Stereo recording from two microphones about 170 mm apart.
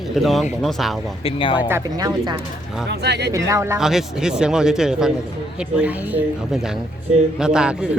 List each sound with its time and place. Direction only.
0.2 s speech: centre (ahead or behind)
1.2 s speech: 30° left (ahead or behind)
1.6 s speech: 15° right (ahead or behind)
2.9 s speech: 75° right (ahead or behind)
3.3 s speech: 20° right (ahead or behind)
3.8 s speech: 5° right (ahead or behind)